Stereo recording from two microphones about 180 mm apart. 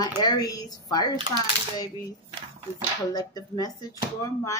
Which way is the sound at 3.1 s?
20° left (ahead or behind).